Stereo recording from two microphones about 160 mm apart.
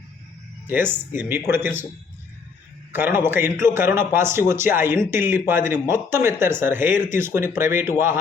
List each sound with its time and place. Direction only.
0.7 s a man's voice: 10° right (ahead or behind)
2.9 s a man's voice: 15° right (ahead or behind)